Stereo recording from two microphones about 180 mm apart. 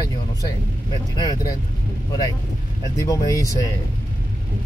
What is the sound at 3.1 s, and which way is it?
Speech, 20° left (ahead or behind).